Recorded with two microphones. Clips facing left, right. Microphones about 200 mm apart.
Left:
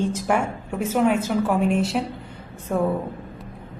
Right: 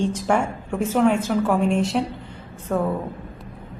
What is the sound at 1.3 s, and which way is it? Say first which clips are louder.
A woman's voice: right 1 dB; 5° left (ahead or behind).